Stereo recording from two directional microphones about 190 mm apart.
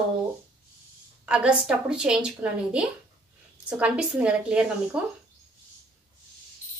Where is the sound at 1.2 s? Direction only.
5° right (ahead or behind).